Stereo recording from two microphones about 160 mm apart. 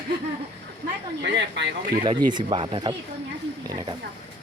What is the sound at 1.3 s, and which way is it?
Speech, 90° right.